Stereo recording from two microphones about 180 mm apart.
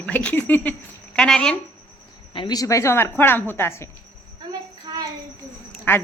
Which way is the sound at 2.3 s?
25° left (ahead or behind).